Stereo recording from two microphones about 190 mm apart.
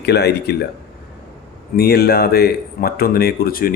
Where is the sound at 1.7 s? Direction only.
55° left (ahead or behind).